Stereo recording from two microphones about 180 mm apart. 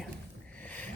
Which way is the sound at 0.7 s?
10° left (ahead or behind).